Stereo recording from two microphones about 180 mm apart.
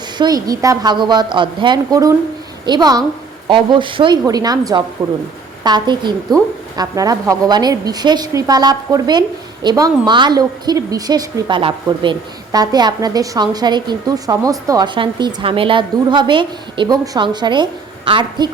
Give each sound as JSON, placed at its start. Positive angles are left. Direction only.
{"t": 0.2, "sound": "a woman's voice", "side_deg": -20}